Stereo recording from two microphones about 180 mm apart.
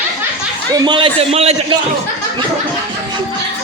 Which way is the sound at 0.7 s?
25° right (ahead or behind).